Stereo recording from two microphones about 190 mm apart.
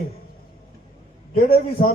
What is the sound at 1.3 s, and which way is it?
Speech, 50° left (ahead or behind).